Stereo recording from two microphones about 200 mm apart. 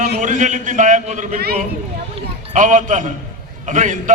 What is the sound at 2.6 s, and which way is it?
A man's voice, 40° right (ahead or behind).